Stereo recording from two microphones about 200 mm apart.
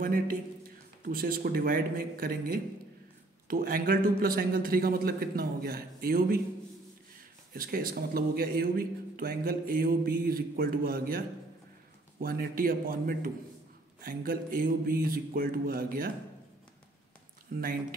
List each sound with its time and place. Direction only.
0.0 s speech: 45° right (ahead or behind)
7.5 s speech: 45° right (ahead or behind)